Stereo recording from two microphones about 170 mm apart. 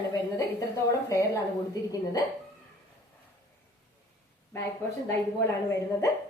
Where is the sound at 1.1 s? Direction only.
20° left (ahead or behind).